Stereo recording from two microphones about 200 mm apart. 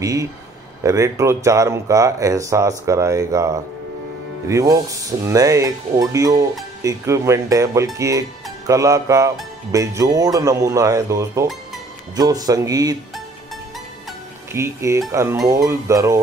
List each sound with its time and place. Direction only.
0.0 s speech: 15° right (ahead or behind)
14.5 s speech: 15° right (ahead or behind)